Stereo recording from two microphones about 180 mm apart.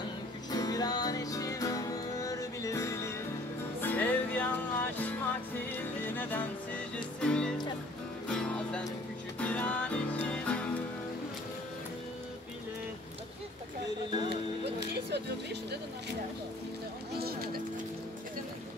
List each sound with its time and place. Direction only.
0.5 s music: 20° left (ahead or behind)
5.7 s music: 10° left (ahead or behind)
14.1 s music: 25° right (ahead or behind)
14.8 s music: 70° right (ahead or behind)
17.2 s music: 55° right (ahead or behind)